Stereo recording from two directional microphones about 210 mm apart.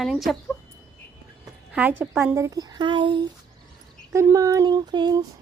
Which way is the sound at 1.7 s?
10° right (ahead or behind).